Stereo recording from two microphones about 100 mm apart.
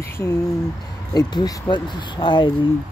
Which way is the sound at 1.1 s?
45° left (ahead or behind).